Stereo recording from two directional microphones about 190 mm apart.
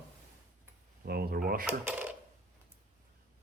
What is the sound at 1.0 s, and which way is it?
Speech, 55° right (ahead or behind).